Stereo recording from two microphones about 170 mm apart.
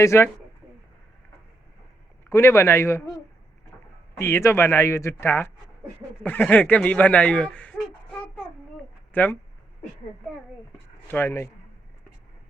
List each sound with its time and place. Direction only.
0.0 s speech: 15° left (ahead or behind)
2.3 s speech: 15° left (ahead or behind)
4.2 s speech: 15° left (ahead or behind)
9.1 s speech: 10° left (ahead or behind)
11.1 s speech: 10° left (ahead or behind)